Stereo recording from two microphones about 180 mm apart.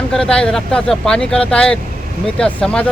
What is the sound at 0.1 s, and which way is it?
Speech, 5° left (ahead or behind).